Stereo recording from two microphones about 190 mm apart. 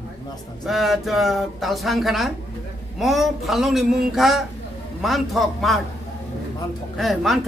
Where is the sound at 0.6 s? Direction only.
Centre (ahead or behind).